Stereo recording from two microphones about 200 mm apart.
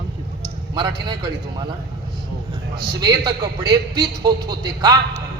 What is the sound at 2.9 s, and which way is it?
A man's voice, 20° right (ahead or behind).